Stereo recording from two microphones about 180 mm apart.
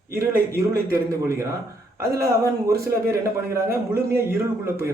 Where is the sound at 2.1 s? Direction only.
15° right (ahead or behind).